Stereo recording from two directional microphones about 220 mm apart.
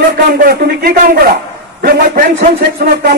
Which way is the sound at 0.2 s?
45° right (ahead or behind).